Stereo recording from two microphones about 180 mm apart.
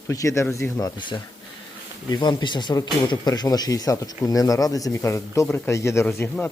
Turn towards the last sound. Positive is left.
turn(degrees=10)  # may be behind; listen again after turning